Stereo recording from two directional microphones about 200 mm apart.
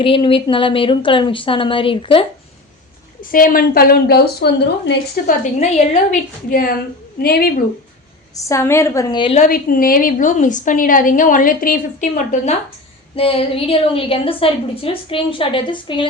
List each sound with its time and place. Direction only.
0.0 s a woman's voice: 25° left (ahead or behind)
3.3 s a woman's voice: 45° left (ahead or behind)
5.2 s a woman's voice: 35° left (ahead or behind)
8.4 s a woman's voice: 15° left (ahead or behind)
9.4 s a woman's voice: 45° left (ahead or behind); by 16.0 s 25° left (ahead or behind)